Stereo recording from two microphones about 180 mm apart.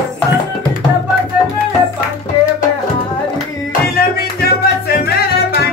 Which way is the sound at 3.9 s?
60° left (ahead or behind).